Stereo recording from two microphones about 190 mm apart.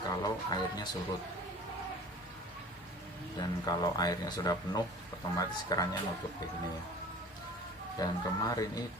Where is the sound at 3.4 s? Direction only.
20° left (ahead or behind).